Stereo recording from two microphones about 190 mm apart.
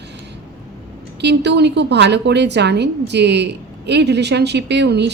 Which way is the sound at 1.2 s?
65° right (ahead or behind).